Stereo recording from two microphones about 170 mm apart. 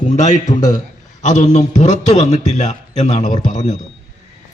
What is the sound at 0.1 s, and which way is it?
A man's voice, 45° left (ahead or behind).